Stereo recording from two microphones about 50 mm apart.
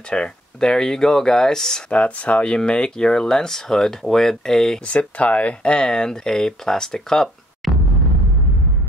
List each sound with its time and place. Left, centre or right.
0.1 s speech: centre
1.9 s speech: left; by 4.8 s centre
4.8 s speech: left; by 7.2 s centre
7.6 s a sound: centre